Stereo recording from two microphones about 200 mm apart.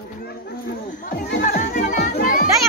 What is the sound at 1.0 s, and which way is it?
Music, 40° left (ahead or behind).